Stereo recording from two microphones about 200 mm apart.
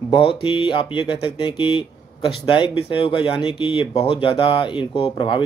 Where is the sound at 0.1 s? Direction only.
25° left (ahead or behind).